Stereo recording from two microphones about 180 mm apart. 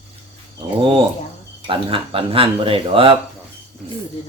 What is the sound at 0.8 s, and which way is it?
Speech, 30° right (ahead or behind).